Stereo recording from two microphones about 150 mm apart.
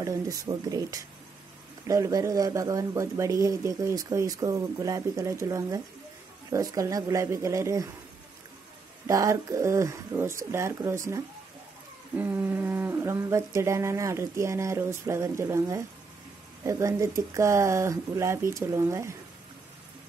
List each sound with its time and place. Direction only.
0.0 s a man's voice: 20° right (ahead or behind)
9.0 s a man's voice: 20° right (ahead or behind)
12.2 s a man's voice: 10° right (ahead or behind)